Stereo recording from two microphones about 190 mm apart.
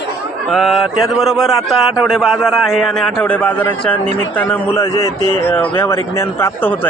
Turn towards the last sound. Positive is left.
turn(degrees=10)  # may be behind; listen again after turning